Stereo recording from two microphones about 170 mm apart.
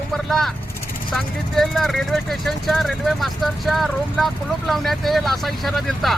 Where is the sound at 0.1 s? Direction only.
Centre (ahead or behind).